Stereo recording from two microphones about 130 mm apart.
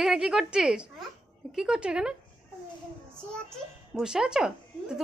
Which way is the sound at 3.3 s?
5° left (ahead or behind).